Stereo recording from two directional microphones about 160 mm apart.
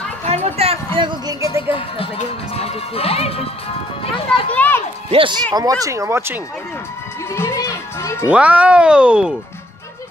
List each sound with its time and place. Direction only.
0.2 s a sound: 40° right (ahead or behind); by 1.6 s 20° right (ahead or behind)
2.5 s music: 40° left (ahead or behind)
4.5 s a sound: 10° left (ahead or behind)
5.1 s speech: 30° right (ahead or behind)
7.3 s music: 15° left (ahead or behind)
8.3 s speech: 10° right (ahead or behind)